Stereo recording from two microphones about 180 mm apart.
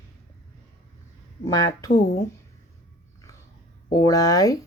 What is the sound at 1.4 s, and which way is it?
Speech, 20° left (ahead or behind).